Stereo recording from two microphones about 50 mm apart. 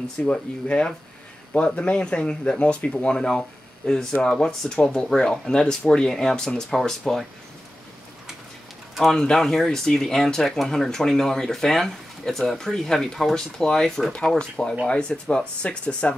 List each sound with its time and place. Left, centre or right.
0.3 s speech: centre
3.3 s a sound: centre
4.2 s speech: centre
8.9 s speech: centre; by 16.2 s left